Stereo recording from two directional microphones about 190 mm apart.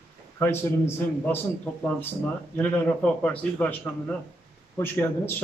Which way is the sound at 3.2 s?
10° left (ahead or behind).